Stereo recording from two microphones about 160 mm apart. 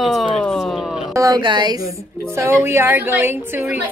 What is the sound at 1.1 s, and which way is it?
Speech, 25° right (ahead or behind).